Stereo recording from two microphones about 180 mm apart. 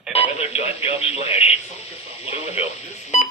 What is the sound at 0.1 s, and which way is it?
Radio, 35° left (ahead or behind).